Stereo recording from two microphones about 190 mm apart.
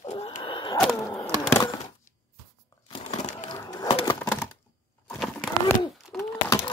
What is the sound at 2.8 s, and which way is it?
Crumpling, 30° left (ahead or behind).